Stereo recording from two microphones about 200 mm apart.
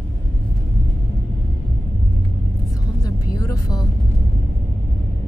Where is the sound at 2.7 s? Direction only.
15° left (ahead or behind).